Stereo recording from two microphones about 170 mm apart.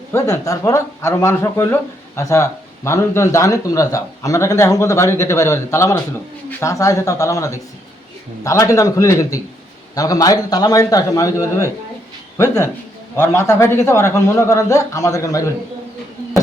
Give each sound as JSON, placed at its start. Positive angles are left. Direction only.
{"t": 0.1, "sound": "a man's voice", "side_deg": 15}
{"t": 13.1, "sound": "speech", "side_deg": 15}